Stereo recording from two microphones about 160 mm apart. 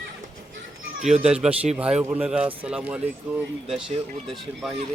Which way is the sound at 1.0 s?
5° right (ahead or behind).